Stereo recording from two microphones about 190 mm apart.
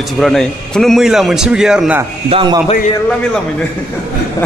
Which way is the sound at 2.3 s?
25° right (ahead or behind).